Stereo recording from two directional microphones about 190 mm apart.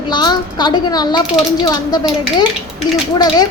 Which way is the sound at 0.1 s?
25° left (ahead or behind).